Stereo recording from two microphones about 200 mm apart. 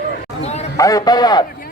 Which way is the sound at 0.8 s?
15° left (ahead or behind).